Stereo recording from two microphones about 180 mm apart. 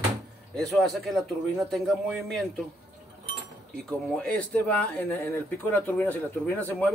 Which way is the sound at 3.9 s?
5° left (ahead or behind).